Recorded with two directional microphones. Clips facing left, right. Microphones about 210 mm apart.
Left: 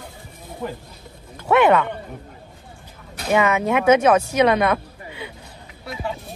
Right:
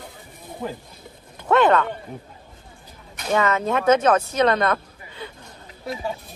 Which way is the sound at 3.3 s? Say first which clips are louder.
Left 2 dB; 10° left (ahead or behind).